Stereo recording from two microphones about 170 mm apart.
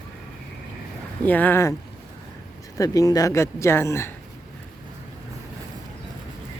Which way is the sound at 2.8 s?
20° left (ahead or behind).